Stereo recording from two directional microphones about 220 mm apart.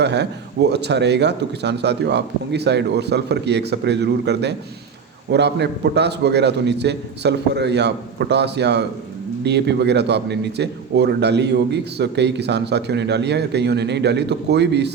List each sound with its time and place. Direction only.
0.0 s a man's voice: 50° right (ahead or behind)